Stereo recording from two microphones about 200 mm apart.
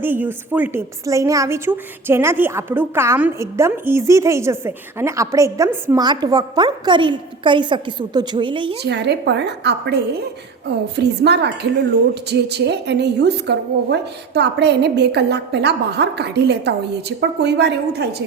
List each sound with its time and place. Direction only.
0.0 s a woman's voice: 10° right (ahead or behind)
8.8 s a woman's voice: 55° right (ahead or behind)